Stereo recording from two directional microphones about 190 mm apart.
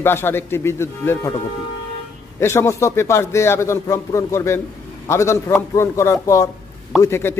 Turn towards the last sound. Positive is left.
turn(degrees=10)  # may be behind; listen again after turning